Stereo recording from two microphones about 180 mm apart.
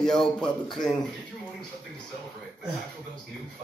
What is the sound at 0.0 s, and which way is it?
Speech, 5° left (ahead or behind).